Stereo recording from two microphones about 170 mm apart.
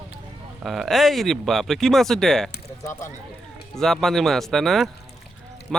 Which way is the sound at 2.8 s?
15° left (ahead or behind).